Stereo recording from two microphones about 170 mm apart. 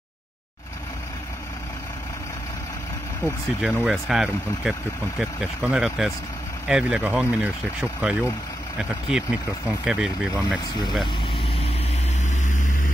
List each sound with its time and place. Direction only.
3.6 s speech: 5° right (ahead or behind)
12.4 s vehicle: 50° left (ahead or behind)